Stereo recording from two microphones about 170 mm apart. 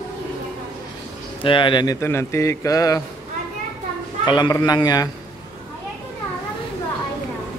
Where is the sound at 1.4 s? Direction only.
30° left (ahead or behind).